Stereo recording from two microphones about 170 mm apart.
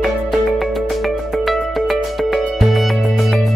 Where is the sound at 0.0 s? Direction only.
Centre (ahead or behind).